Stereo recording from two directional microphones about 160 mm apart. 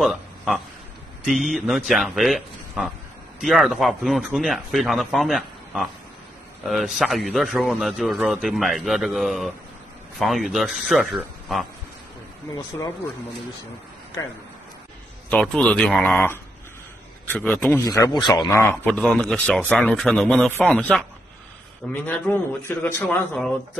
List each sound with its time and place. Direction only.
0.0 s a sound: centre (ahead or behind)
1.3 s a man's voice: centre (ahead or behind)
14.2 s speech: 20° left (ahead or behind)
15.2 s a man's voice: 5° left (ahead or behind)
17.8 s a man's voice: 25° left (ahead or behind)
22.0 s a man's voice: 10° left (ahead or behind)